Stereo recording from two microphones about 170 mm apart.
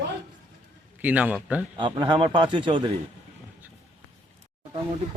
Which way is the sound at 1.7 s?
30° right (ahead or behind).